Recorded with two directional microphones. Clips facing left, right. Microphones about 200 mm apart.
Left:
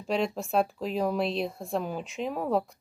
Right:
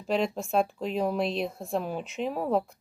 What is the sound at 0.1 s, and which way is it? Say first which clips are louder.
Speech: right 1 dB; centre (ahead or behind).